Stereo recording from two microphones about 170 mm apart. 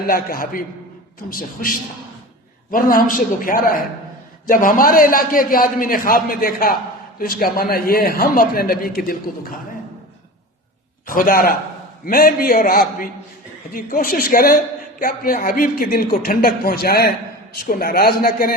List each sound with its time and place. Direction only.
0.1 s a woman's voice: 60° left (ahead or behind)
2.7 s a woman's voice: 55° left (ahead or behind)
11.0 s a woman's voice: 55° left (ahead or behind)